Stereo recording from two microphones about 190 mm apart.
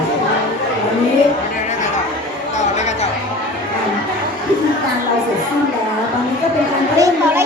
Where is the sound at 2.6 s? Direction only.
35° left (ahead or behind).